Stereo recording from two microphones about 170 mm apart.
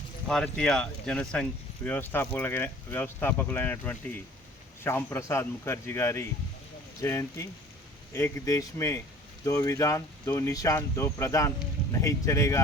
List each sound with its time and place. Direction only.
0.3 s speech: 5° left (ahead or behind)